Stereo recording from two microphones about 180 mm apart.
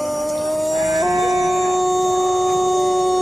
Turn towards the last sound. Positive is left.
turn(degrees=0)  # may be behind; listen again after turning